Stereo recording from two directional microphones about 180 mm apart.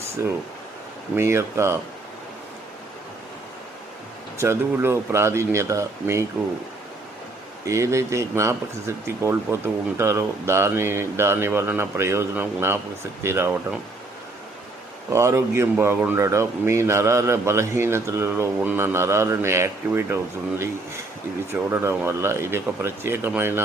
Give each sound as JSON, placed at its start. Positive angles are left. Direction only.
{"t": 0.2, "sound": "a man's voice", "side_deg": -15}
{"t": 4.4, "sound": "a man's voice", "side_deg": -15}
{"t": 7.6, "sound": "a man's voice", "side_deg": -15}
{"t": 15.1, "sound": "a man's voice", "side_deg": -15}
{"t": 21.5, "sound": "a man's voice", "side_deg": -15}